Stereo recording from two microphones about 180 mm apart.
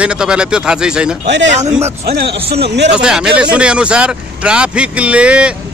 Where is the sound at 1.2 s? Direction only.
75° right (ahead or behind).